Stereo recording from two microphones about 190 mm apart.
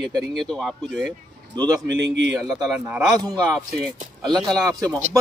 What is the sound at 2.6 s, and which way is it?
Speech, 5° right (ahead or behind).